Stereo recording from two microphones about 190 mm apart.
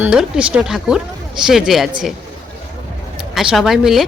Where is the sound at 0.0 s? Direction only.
5° right (ahead or behind).